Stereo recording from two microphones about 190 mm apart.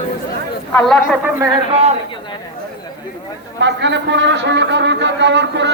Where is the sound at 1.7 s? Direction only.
35° right (ahead or behind).